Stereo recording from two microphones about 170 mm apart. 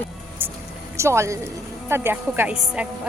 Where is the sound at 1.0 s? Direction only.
15° right (ahead or behind).